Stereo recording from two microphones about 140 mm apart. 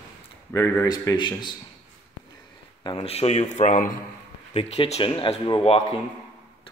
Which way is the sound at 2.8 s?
35° left (ahead or behind).